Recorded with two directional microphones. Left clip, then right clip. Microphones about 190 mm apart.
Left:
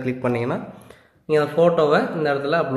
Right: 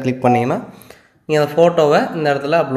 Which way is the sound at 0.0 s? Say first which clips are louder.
Right 8 dB; 30° right (ahead or behind).